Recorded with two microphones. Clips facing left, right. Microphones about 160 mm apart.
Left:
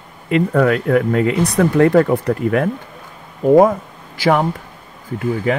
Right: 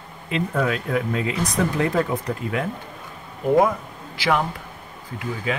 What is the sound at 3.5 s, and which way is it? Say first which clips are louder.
Speech: left 7 dB; 45° left (ahead or behind).